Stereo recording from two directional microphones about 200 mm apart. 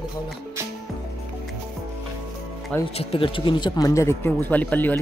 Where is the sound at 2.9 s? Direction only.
30° left (ahead or behind); by 4.9 s 10° left (ahead or behind).